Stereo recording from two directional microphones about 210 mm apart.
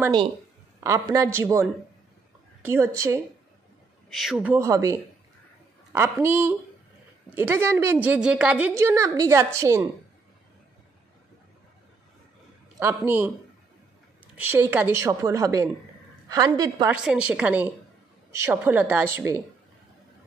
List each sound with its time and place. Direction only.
0.0 s a woman's voice: 20° right (ahead or behind)
4.1 s a woman's voice: centre (ahead or behind)
5.9 s a woman's voice: 10° right (ahead or behind)
12.7 s a woman's voice: 10° right (ahead or behind)
14.3 s a woman's voice: 10° right (ahead or behind)
16.9 s a woman's voice: 5° right (ahead or behind)